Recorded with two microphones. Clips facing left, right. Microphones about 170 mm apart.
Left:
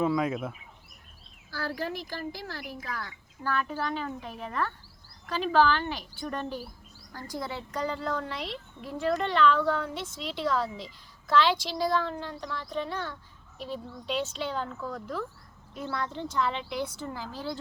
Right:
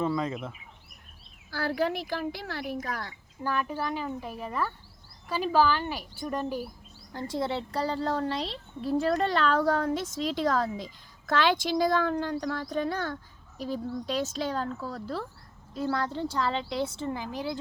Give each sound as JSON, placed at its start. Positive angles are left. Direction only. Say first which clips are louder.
{"t": 0.0, "sound": "speech", "louder": "left 2 dB", "side_deg": 5}
{"t": 1.5, "sound": "speech", "louder": "right 5 dB", "side_deg": -60}
{"t": 2.8, "sound": "speech", "louder": "right 2 dB", "side_deg": -35}
{"t": 3.4, "sound": "a woman's voice", "louder": "right 1 dB", "side_deg": -15}
{"t": 7.1, "sound": "speech", "louder": "right 6 dB", "side_deg": -25}